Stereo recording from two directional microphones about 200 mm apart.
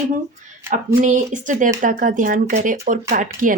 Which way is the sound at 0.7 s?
40° right (ahead or behind).